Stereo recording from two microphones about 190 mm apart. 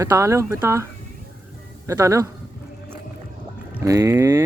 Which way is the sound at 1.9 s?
15° right (ahead or behind).